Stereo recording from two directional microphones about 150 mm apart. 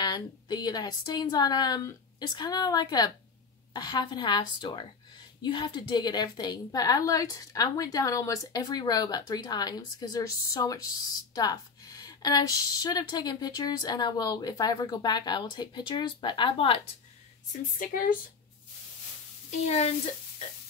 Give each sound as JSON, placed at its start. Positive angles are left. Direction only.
{"t": 0.0, "sound": "a woman's voice", "side_deg": 25}
{"t": 17.5, "sound": "a woman's voice", "side_deg": 65}
{"t": 19.6, "sound": "speech", "side_deg": 45}